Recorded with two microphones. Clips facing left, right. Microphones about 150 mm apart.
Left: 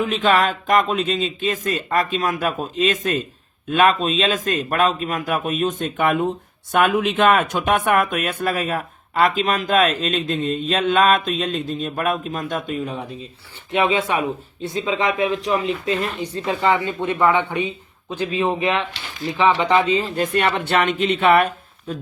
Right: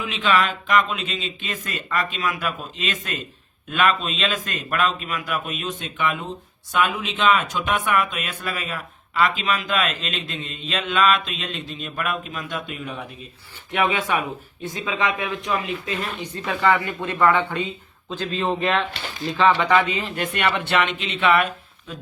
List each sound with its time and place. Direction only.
0.0 s a man's voice: 45° left (ahead or behind)